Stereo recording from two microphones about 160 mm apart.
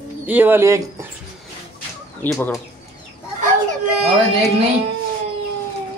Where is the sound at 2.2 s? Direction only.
10° left (ahead or behind).